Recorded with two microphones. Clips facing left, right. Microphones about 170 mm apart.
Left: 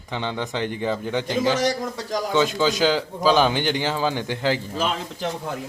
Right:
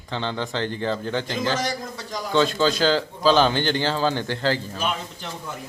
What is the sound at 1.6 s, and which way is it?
Speech, 75° left (ahead or behind).